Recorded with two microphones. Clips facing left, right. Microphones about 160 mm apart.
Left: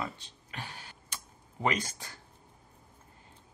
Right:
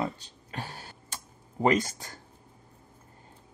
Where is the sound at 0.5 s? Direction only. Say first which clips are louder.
Right 5 dB; 40° right (ahead or behind).